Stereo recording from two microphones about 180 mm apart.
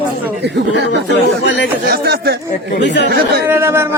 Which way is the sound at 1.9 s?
60° right (ahead or behind).